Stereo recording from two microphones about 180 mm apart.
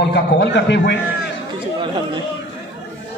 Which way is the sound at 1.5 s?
25° right (ahead or behind).